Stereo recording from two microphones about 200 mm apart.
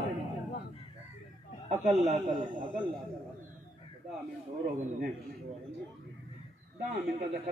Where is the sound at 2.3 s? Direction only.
20° right (ahead or behind).